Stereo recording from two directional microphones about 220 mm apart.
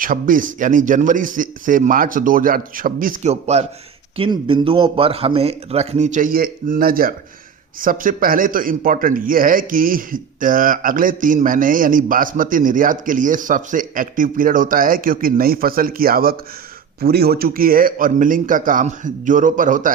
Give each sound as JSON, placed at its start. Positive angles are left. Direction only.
{"t": 0.0, "sound": "a man's voice", "side_deg": -40}